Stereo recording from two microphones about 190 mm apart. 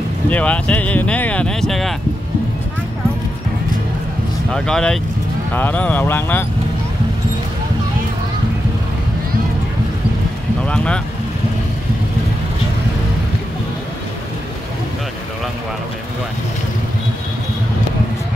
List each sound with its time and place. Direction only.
0.3 s speech: 5° left (ahead or behind)
4.5 s speech: 5° left (ahead or behind)
10.6 s speech: 5° left (ahead or behind)